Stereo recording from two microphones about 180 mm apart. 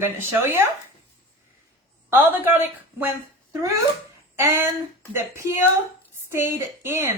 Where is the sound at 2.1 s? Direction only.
10° right (ahead or behind).